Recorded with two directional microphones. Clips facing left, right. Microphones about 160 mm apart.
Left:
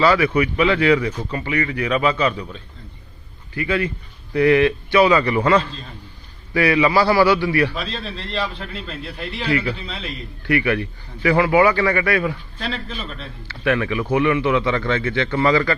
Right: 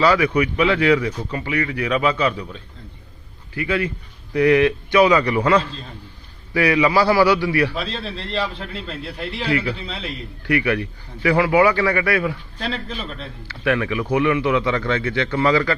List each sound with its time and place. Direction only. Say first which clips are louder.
0.0 s speech: even; 10° right (ahead or behind)
7.8 s a man's voice: right 1 dB; 30° right (ahead or behind)
10.4 s speech: left 1 dB; 10° right (ahead or behind)
12.5 s a man's voice: right 1 dB; 40° right (ahead or behind)
13.5 s speech: left 1 dB; 5° right (ahead or behind)